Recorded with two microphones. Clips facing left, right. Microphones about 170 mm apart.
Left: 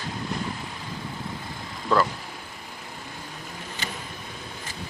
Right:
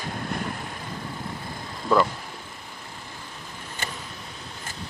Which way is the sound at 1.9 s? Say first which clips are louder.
Right 2 dB; 10° right (ahead or behind).